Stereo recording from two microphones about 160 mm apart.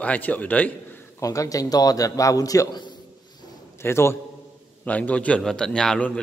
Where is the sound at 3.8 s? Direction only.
15° left (ahead or behind).